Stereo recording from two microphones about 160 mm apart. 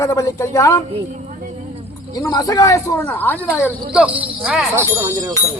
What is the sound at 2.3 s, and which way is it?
Speech, 25° left (ahead or behind).